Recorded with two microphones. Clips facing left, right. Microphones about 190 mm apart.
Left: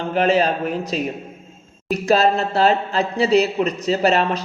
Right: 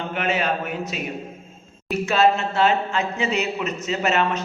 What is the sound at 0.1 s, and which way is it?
Speech, 35° left (ahead or behind).